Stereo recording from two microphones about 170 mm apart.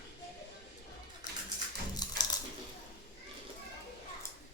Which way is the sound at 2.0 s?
25° left (ahead or behind).